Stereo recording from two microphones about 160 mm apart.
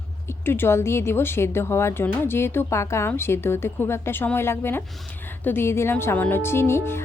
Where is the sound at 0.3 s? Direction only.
15° left (ahead or behind).